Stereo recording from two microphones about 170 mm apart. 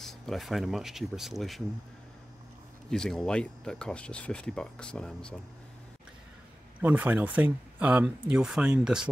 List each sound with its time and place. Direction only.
0.0 s speech: centre (ahead or behind)
2.9 s speech: 5° left (ahead or behind)
6.8 s speech: 10° right (ahead or behind)